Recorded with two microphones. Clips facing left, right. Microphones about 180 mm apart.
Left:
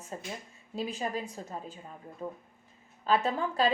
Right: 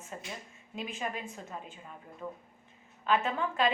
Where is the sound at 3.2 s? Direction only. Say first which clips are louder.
Left 2 dB; 35° left (ahead or behind).